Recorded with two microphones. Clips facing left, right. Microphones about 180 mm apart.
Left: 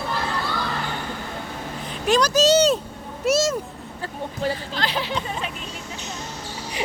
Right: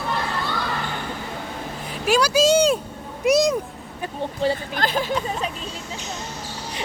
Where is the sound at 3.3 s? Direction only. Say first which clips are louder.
Right 3 dB; 15° right (ahead or behind).